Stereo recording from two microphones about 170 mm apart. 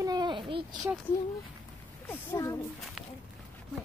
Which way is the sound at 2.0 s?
20° left (ahead or behind).